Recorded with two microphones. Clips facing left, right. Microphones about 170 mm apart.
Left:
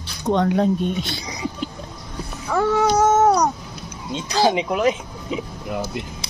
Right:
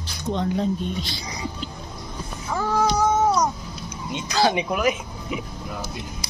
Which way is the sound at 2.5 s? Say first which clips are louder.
Left 4 dB; 70° left (ahead or behind).